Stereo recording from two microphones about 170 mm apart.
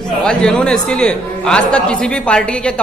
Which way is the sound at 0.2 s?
5° left (ahead or behind).